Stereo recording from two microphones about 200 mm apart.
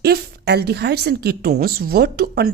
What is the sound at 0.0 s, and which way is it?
A woman's voice, 55° right (ahead or behind).